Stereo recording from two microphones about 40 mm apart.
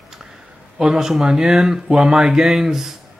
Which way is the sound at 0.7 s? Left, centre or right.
Centre.